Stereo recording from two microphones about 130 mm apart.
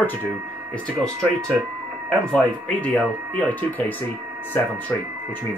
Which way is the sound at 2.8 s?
10° left (ahead or behind).